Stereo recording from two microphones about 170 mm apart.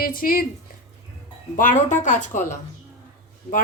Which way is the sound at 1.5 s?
50° left (ahead or behind).